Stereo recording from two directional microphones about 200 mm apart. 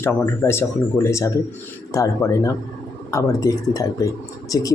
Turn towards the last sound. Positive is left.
turn(degrees=15)  # may be behind; listen again after turning